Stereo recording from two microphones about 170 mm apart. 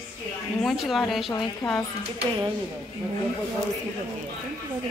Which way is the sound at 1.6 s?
15° left (ahead or behind).